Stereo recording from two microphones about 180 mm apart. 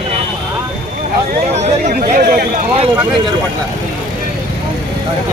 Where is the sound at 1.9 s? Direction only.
50° right (ahead or behind).